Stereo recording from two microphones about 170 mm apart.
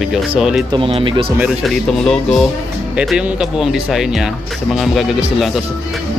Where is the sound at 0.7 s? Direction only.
30° right (ahead or behind).